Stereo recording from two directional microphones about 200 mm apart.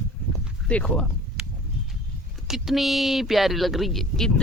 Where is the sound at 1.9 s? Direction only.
Centre (ahead or behind).